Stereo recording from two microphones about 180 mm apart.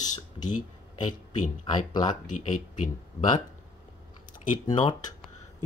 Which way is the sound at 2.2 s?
45° left (ahead or behind).